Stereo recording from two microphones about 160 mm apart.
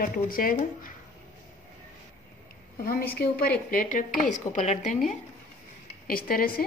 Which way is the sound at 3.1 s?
70° left (ahead or behind).